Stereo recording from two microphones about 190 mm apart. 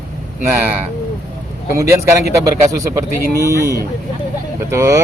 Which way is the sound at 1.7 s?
15° right (ahead or behind).